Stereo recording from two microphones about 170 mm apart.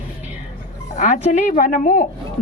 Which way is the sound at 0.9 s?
45° left (ahead or behind).